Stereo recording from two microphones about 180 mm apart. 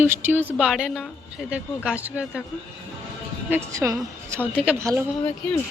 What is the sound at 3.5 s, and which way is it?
Speech, 15° right (ahead or behind).